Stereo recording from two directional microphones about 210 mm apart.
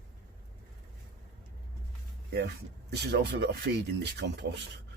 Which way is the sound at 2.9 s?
55° right (ahead or behind).